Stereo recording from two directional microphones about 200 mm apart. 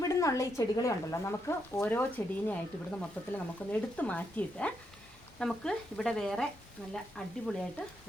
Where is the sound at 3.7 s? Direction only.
10° left (ahead or behind).